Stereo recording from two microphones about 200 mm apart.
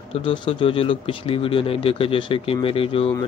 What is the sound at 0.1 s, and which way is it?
Speech, 30° left (ahead or behind).